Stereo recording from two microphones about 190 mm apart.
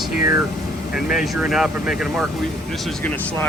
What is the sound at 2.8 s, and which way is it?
Speech, 10° left (ahead or behind).